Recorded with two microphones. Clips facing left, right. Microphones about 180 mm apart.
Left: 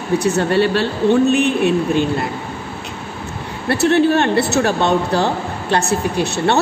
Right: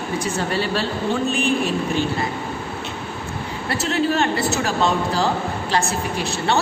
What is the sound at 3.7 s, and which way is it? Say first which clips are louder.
A woman's voice: left 8 dB; 65° left (ahead or behind).